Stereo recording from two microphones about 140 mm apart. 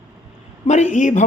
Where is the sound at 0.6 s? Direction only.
60° left (ahead or behind).